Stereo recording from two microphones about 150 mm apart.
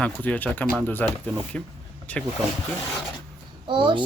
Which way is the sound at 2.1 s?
10° left (ahead or behind).